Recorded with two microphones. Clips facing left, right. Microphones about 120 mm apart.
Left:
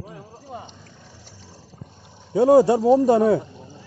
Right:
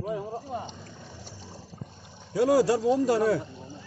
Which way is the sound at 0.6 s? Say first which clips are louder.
Right 3 dB; 20° right (ahead or behind).